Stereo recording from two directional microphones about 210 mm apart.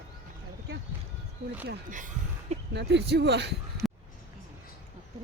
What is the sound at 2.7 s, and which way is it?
Speech, 55° right (ahead or behind).